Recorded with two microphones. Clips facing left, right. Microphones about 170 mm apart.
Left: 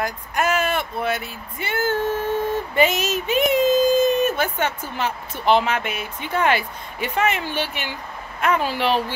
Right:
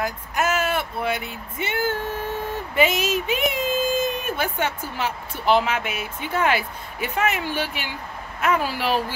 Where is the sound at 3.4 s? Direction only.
45° left (ahead or behind).